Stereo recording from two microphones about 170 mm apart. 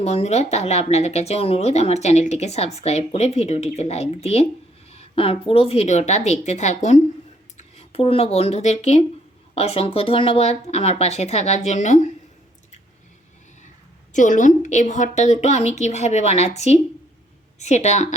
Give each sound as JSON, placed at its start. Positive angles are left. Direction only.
{"t": 0.0, "sound": "speech", "side_deg": 40}
{"t": 14.1, "sound": "speech", "side_deg": 50}